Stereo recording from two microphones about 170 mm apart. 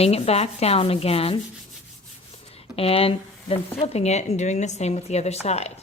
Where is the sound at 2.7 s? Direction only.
35° left (ahead or behind).